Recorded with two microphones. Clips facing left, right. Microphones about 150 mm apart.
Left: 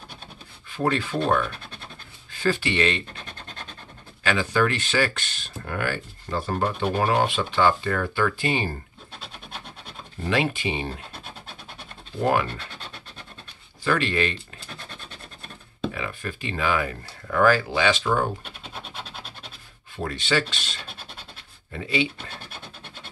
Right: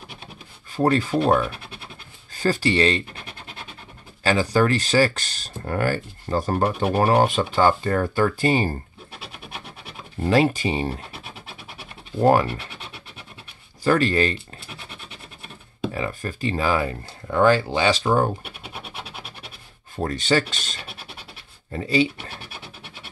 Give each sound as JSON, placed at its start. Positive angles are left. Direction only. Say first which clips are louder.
{"t": 0.7, "sound": "speech", "louder": "right 5 dB", "side_deg": -40}
{"t": 1.4, "sound": "scratch", "louder": "right 2 dB", "side_deg": -10}
{"t": 2.3, "sound": "speech", "louder": "right 3 dB", "side_deg": -40}
{"t": 3.2, "sound": "scratch", "louder": "right 1 dB", "side_deg": -10}
{"t": 4.2, "sound": "speech", "louder": "right 3 dB", "side_deg": -35}
{"t": 9.2, "sound": "rub", "louder": "right 2 dB", "side_deg": -10}
{"t": 10.3, "sound": "speech", "louder": "right 5 dB", "side_deg": -40}
{"t": 12.2, "sound": "speech", "louder": "right 5 dB", "side_deg": -35}
{"t": 13.8, "sound": "speech", "louder": "right 5 dB", "side_deg": -40}
{"t": 14.7, "sound": "scratch", "louder": "even", "side_deg": -10}
{"t": 15.9, "sound": "speech", "louder": "right 4 dB", "side_deg": -40}
{"t": 18.4, "sound": "scratch", "louder": "right 2 dB", "side_deg": -10}
{"t": 20.0, "sound": "speech", "louder": "right 4 dB", "side_deg": -40}